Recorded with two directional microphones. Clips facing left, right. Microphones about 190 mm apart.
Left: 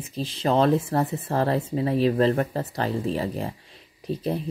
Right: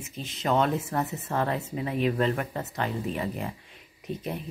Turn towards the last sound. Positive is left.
turn(degrees=35)  # may be behind; listen again after turning